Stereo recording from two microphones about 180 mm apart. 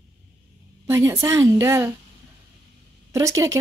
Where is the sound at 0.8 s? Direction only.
15° right (ahead or behind).